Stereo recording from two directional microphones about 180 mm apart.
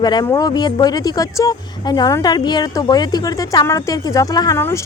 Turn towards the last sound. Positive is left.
turn(degrees=15)  # may be behind; listen again after turning